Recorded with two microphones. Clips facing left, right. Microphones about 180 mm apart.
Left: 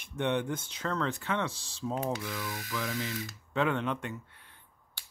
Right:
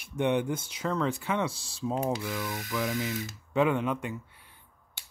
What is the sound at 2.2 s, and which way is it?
Speech, 20° right (ahead or behind).